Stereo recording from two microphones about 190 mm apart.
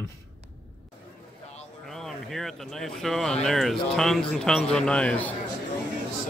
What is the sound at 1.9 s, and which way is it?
Speech, centre (ahead or behind).